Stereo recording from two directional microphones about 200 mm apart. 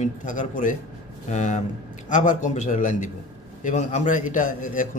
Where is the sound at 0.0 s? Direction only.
40° left (ahead or behind).